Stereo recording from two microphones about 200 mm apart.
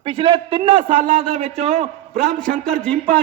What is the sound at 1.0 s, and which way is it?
Speech, 40° right (ahead or behind).